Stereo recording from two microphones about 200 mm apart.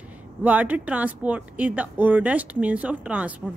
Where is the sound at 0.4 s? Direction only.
10° right (ahead or behind).